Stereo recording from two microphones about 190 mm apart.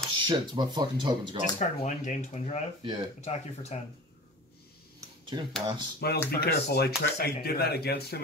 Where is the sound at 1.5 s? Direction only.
40° left (ahead or behind).